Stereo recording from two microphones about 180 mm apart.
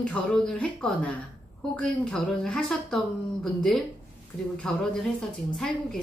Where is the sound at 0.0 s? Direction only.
5° left (ahead or behind).